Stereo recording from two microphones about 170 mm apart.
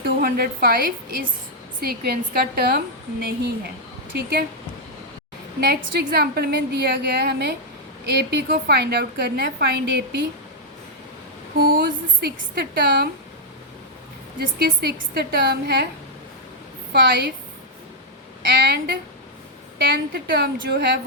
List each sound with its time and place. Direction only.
0.0 s a woman's voice: 60° right (ahead or behind)
5.5 s a woman's voice: 65° right (ahead or behind)
11.8 s a woman's voice: 70° right (ahead or behind)
14.3 s a woman's voice: 65° right (ahead or behind)
16.9 s a woman's voice: 80° right
18.4 s a woman's voice: 70° right (ahead or behind)